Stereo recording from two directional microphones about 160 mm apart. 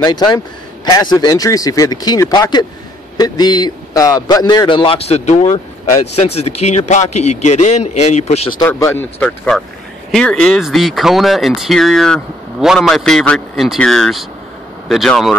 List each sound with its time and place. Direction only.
0.0 s a man's voice: 25° left (ahead or behind); by 8.4 s 45° left (ahead or behind)
8.6 s speech: 15° left (ahead or behind)